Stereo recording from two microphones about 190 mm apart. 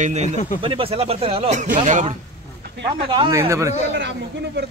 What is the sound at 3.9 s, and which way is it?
Speech, 70° right (ahead or behind).